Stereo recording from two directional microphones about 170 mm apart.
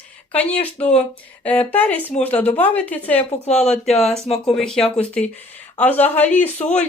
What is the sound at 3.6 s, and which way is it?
Speech, 40° left (ahead or behind).